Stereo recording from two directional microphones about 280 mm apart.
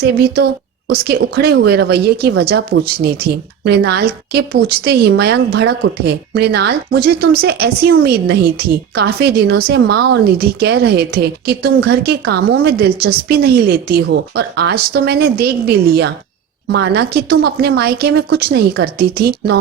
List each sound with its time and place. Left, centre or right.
0.0 s a woman's voice: right